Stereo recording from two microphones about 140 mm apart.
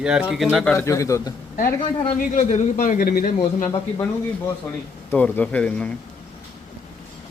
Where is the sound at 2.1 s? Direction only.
65° left (ahead or behind); by 3.7 s 90° left.